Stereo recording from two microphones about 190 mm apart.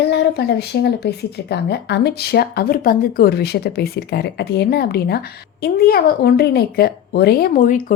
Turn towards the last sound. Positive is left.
turn(degrees=45)  # may be behind; listen again after turning